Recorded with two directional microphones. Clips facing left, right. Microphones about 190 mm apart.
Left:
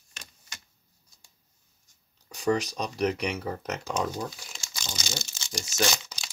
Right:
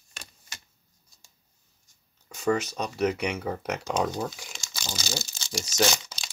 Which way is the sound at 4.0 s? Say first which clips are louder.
Right 3 dB; 25° right (ahead or behind).